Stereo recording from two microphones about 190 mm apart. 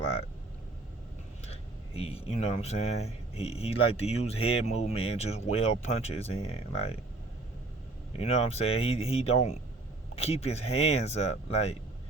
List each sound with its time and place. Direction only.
1.5 s speech: 30° left (ahead or behind)
8.2 s speech: 35° left (ahead or behind)